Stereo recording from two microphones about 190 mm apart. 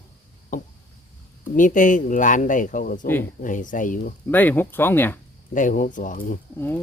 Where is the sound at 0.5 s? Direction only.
45° left (ahead or behind).